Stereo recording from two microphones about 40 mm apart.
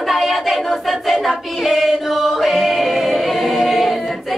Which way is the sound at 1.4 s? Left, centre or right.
Centre.